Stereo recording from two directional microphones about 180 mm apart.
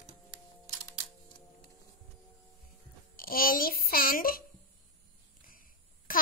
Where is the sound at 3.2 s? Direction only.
55° left (ahead or behind).